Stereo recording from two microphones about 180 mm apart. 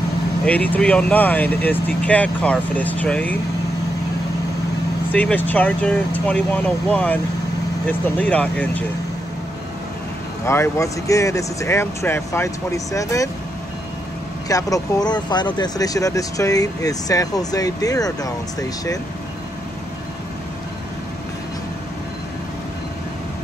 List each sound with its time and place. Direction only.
0.5 s speech: 10° left (ahead or behind)
5.1 s speech: 10° left (ahead or behind)
8.2 s speech: 10° left (ahead or behind)
10.4 s speech: 15° left (ahead or behind)
14.5 s speech: 20° left (ahead or behind)